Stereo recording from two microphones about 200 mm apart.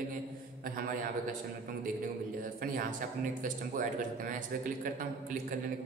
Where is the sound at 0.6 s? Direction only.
45° right (ahead or behind).